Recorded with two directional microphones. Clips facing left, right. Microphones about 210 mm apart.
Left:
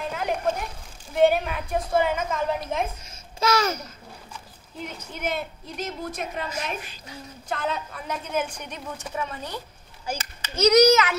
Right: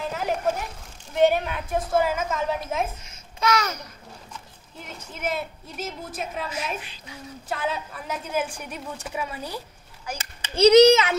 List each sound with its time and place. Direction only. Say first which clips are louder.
0.1 s a sound: even; 5° right (ahead or behind)
1.1 s a woman's voice: even; centre (ahead or behind)
3.3 s babbling: left 1 dB; 30° left (ahead or behind)
4.8 s a woman's voice: even; 5° right (ahead or behind)
6.8 s speech: left 1 dB; 45° left (ahead or behind)
7.4 s a woman's voice: even; 5° right (ahead or behind)
10.5 s a child's voice: right 3 dB; 30° right (ahead or behind)